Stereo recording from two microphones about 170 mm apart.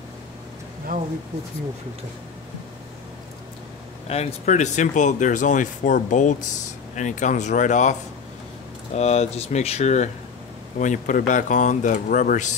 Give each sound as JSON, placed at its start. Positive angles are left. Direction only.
{"t": 0.9, "sound": "a sound", "side_deg": -55}
{"t": 4.1, "sound": "speech", "side_deg": 40}
{"t": 8.9, "sound": "speech", "side_deg": 40}